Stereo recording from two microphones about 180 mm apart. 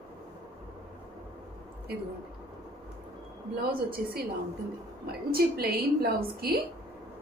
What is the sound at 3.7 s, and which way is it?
A woman's voice, 55° right (ahead or behind).